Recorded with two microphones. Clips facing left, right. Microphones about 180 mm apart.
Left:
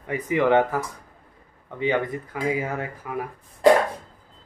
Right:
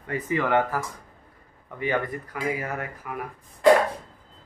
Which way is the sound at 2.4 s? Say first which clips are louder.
Left 3 dB; 25° left (ahead or behind).